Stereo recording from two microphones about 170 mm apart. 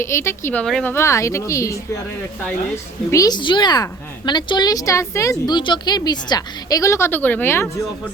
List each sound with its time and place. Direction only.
0.0 s speech: 15° left (ahead or behind)
3.1 s speech: 20° left (ahead or behind)